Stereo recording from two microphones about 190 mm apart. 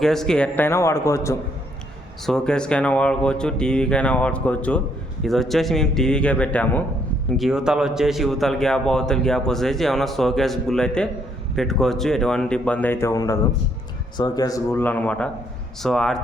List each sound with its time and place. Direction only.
0.0 s speech: centre (ahead or behind)
2.2 s speech: 5° left (ahead or behind)